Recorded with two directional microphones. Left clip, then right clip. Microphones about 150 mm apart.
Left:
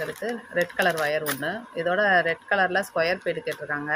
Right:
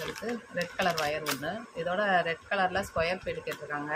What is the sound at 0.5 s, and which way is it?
Speech, 50° left (ahead or behind).